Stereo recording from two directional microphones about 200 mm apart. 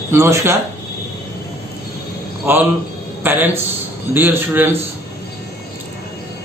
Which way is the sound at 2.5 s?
10° right (ahead or behind).